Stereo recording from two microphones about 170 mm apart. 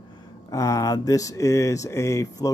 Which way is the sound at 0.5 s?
20° left (ahead or behind).